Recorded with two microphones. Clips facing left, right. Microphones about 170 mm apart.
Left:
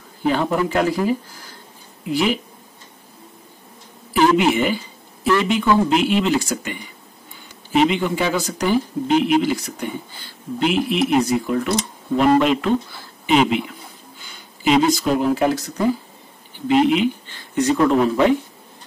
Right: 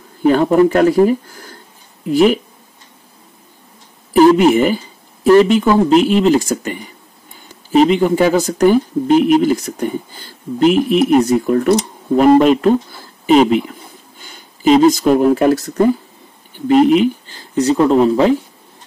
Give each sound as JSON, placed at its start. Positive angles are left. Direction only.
{"t": 0.3, "sound": "speech", "side_deg": -45}
{"t": 4.1, "sound": "speech", "side_deg": -40}